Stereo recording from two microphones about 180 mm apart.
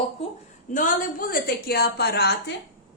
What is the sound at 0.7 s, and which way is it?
A woman's voice, 45° left (ahead or behind).